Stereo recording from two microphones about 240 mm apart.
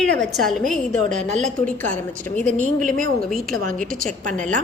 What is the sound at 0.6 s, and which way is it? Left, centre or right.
Speech, right.